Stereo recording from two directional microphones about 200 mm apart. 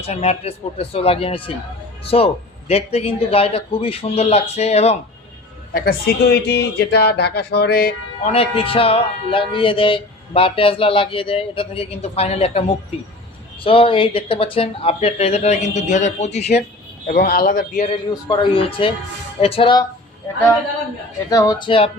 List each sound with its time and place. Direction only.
0.0 s speech: 30° left (ahead or behind)
5.7 s speech: 50° left (ahead or behind)
8.2 s speech: 30° left (ahead or behind)
17.1 s speech: 50° left (ahead or behind)
17.9 s speech: 25° left (ahead or behind)
21.2 s speech: 20° left (ahead or behind)